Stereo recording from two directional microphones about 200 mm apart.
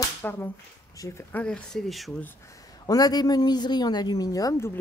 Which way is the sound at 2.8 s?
20° left (ahead or behind).